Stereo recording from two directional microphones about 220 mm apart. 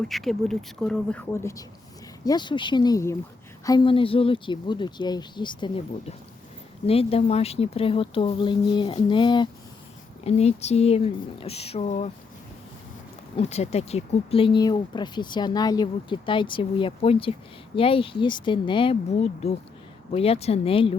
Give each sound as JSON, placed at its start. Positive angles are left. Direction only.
{"t": 0.0, "sound": "speech", "side_deg": 0}
{"t": 13.3, "sound": "speech", "side_deg": 30}